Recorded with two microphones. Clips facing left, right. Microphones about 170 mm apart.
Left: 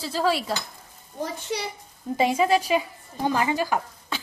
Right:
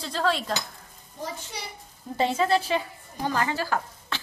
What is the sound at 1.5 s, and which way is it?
Speech, 80° left.